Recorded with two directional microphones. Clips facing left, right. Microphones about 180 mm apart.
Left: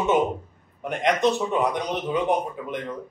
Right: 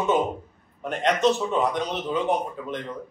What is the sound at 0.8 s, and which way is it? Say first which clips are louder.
A man's voice: even; 15° left (ahead or behind).